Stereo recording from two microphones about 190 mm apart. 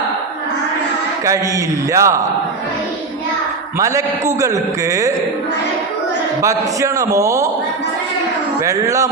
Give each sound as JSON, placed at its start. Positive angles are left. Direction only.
{"t": 1.2, "sound": "a man's voice", "side_deg": -15}
{"t": 3.8, "sound": "a man's voice", "side_deg": -15}
{"t": 6.4, "sound": "a man's voice", "side_deg": -15}
{"t": 8.6, "sound": "a man's voice", "side_deg": -15}